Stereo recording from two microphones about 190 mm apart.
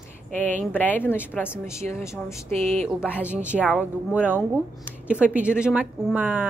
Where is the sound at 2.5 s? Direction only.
35° right (ahead or behind).